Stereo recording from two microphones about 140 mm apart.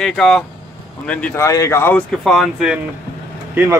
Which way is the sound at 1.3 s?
20° left (ahead or behind).